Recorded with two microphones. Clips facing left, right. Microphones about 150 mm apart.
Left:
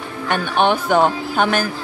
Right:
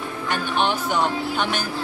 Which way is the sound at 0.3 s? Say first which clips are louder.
Left 6 dB; 55° left (ahead or behind).